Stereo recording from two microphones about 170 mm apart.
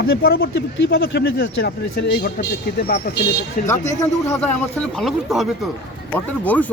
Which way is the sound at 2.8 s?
65° left (ahead or behind).